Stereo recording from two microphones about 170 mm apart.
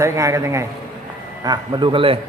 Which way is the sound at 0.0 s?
15° right (ahead or behind).